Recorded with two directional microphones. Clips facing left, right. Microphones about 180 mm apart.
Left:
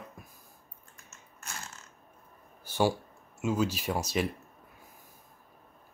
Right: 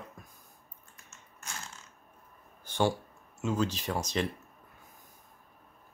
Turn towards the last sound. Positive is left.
turn(degrees=10)  # may be behind; listen again after turning